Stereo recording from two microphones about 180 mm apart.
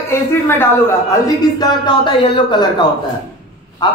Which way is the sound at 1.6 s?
25° left (ahead or behind).